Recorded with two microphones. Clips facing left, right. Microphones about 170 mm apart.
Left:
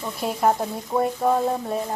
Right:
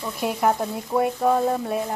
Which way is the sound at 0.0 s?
Centre (ahead or behind).